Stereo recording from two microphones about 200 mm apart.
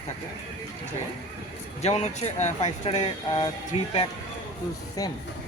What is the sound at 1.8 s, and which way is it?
Speech, 35° left (ahead or behind).